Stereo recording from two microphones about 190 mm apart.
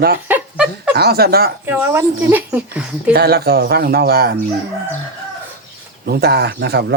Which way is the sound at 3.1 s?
55° right (ahead or behind).